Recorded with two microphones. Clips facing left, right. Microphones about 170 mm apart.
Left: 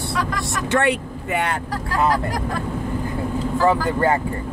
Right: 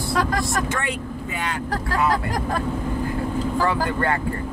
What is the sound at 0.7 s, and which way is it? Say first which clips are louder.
Speech: left 8 dB; 70° left (ahead or behind).